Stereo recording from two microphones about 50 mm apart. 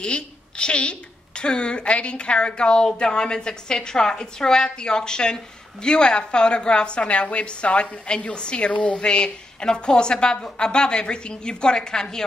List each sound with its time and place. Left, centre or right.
0.0 s a woman's voice: centre